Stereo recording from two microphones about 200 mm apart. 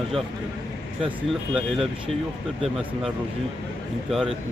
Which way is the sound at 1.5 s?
Centre (ahead or behind).